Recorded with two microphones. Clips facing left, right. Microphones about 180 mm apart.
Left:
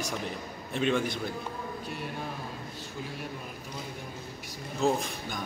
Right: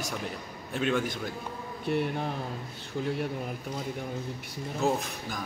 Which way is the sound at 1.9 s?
60° right (ahead or behind).